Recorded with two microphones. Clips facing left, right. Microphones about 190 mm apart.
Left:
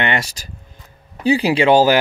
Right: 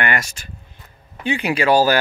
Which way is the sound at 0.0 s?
25° left (ahead or behind).